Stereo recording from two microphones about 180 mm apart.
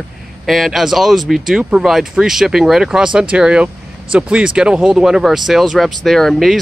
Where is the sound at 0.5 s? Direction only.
Centre (ahead or behind).